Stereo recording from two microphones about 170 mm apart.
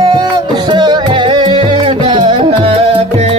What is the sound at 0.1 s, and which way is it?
Music, 25° right (ahead or behind).